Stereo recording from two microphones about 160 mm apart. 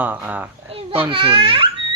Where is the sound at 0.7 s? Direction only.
35° right (ahead or behind).